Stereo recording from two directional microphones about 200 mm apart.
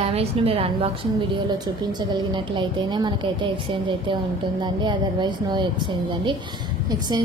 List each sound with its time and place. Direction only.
0.0 s a woman's voice: 30° right (ahead or behind)
2.3 s a woman's voice: 20° right (ahead or behind)